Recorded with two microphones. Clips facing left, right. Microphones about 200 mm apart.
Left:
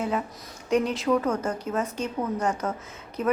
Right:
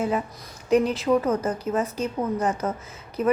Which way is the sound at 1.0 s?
15° right (ahead or behind).